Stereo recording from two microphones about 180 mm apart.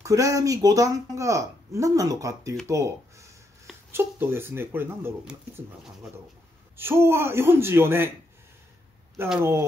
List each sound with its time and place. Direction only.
0.0 s speech: 20° right (ahead or behind)
6.8 s speech: 15° right (ahead or behind)
9.4 s speech: 15° right (ahead or behind)